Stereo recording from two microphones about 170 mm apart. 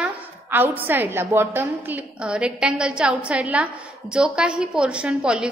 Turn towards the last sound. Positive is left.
turn(degrees=-5)  # may be behind; listen again after turning